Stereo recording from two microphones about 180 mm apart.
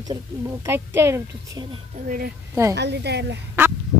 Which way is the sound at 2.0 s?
50° right (ahead or behind).